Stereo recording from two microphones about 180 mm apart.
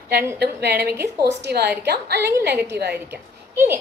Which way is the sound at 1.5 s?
65° right (ahead or behind).